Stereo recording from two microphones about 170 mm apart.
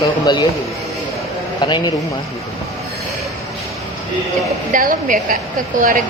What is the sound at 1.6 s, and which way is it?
Speech, 25° left (ahead or behind).